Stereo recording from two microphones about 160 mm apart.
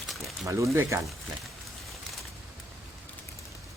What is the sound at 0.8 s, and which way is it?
Speech, 15° right (ahead or behind).